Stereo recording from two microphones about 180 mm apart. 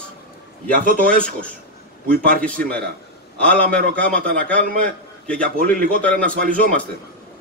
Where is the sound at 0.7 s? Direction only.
50° right (ahead or behind).